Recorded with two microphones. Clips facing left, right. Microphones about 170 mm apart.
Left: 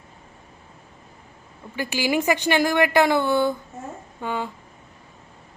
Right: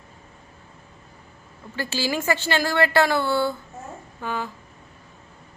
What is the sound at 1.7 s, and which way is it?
A woman's voice, 15° left (ahead or behind).